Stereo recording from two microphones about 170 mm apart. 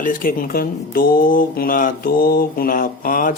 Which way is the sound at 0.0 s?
55° left (ahead or behind).